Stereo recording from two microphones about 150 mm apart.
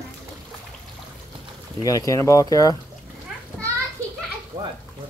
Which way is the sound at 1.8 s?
25° left (ahead or behind).